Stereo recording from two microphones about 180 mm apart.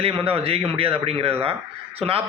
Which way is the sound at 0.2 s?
35° right (ahead or behind).